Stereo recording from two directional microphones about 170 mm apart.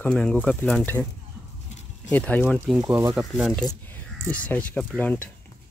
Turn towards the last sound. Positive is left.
turn(degrees=10)  # may be behind; listen again after turning